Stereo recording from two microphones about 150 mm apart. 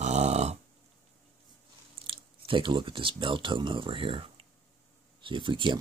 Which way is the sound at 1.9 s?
35° right (ahead or behind).